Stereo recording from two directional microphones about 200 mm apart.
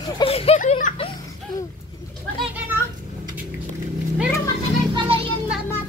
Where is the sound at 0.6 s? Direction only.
40° left (ahead or behind).